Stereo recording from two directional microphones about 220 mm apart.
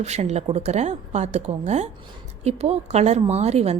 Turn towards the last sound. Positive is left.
turn(degrees=-30)  # may be behind; listen again after turning